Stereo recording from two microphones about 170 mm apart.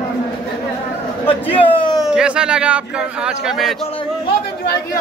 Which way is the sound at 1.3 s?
30° left (ahead or behind).